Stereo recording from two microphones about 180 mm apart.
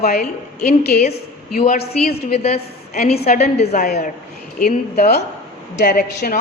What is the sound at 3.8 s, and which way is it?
A woman's voice, 60° left (ahead or behind).